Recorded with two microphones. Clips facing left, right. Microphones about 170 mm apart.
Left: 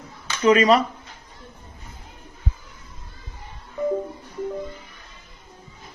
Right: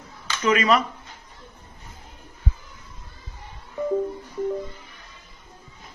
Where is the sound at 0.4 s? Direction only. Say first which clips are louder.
Left 4 dB; 35° left (ahead or behind).